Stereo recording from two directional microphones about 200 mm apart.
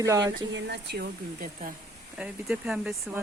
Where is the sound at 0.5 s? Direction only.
55° right (ahead or behind).